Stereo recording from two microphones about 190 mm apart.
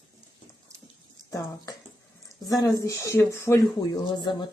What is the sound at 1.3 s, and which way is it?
Speech, 20° left (ahead or behind).